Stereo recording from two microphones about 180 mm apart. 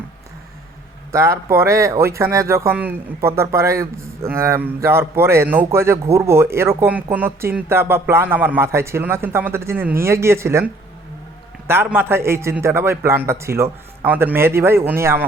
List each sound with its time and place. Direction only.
1.1 s speech: 15° right (ahead or behind)
11.7 s speech: 10° right (ahead or behind)